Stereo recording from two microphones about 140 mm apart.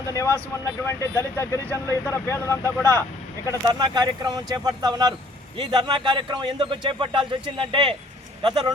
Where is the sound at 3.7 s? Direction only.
30° right (ahead or behind).